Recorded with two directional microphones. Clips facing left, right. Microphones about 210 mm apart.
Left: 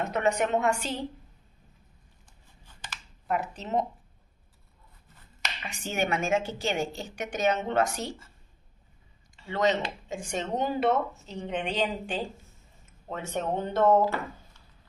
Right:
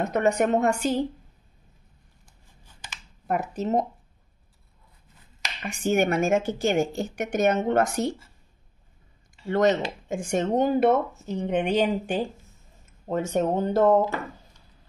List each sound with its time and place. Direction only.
0.1 s speech: 45° right (ahead or behind)
3.3 s speech: 45° right (ahead or behind)
5.6 s speech: 45° right (ahead or behind)
9.5 s speech: 50° right (ahead or behind)
13.0 s speech: 40° right (ahead or behind)